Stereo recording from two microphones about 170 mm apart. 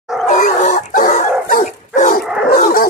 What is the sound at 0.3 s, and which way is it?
Dog, 50° left (ahead or behind).